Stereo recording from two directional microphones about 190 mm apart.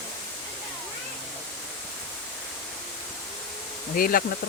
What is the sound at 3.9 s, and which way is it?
Speech, 50° left (ahead or behind).